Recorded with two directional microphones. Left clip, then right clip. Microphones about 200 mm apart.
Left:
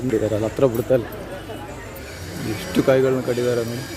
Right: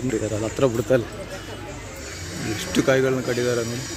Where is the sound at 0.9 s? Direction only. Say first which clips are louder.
Even; 5° right (ahead or behind).